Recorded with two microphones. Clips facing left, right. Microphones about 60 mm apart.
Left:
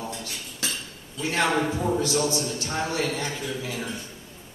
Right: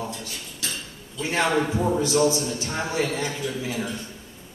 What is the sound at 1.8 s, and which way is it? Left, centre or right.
A man's voice, centre.